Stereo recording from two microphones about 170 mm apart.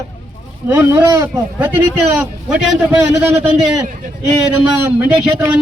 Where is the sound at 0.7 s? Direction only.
10° right (ahead or behind).